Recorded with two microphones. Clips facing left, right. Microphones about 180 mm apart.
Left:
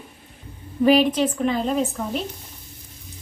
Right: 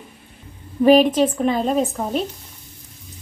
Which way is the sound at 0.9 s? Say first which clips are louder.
Right 4 dB; 45° right (ahead or behind).